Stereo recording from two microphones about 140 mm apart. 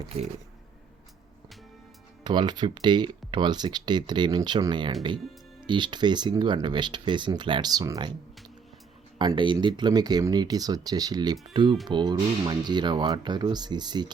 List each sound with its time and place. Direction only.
2.2 s speech: 30° right (ahead or behind)
9.1 s speech: 35° right (ahead or behind)